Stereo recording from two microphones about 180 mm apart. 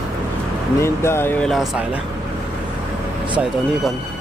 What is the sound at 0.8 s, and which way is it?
Speech, 15° left (ahead or behind).